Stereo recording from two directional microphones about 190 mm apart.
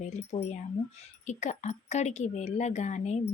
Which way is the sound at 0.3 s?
35° left (ahead or behind).